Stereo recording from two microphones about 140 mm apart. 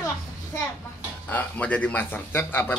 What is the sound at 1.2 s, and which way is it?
A man's voice, 10° left (ahead or behind).